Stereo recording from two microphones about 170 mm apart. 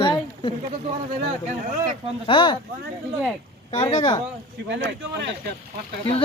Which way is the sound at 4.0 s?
20° left (ahead or behind).